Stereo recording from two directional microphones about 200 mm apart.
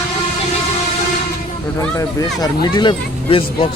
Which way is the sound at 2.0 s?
20° left (ahead or behind).